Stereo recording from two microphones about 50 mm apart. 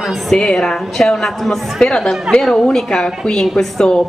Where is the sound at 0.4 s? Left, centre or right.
Centre.